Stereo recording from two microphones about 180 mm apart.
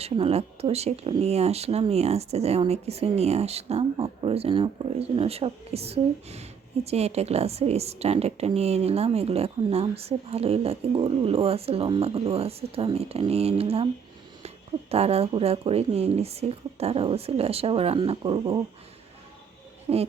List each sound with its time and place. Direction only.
0.0 s speech: 35° right (ahead or behind)
19.9 s hoot: 30° right (ahead or behind)